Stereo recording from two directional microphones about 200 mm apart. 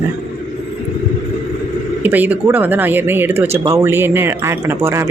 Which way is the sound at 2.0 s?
10° right (ahead or behind).